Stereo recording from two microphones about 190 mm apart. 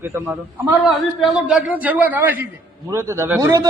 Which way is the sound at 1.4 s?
5° right (ahead or behind).